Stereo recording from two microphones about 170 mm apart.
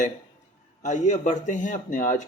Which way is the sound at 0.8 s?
45° left (ahead or behind).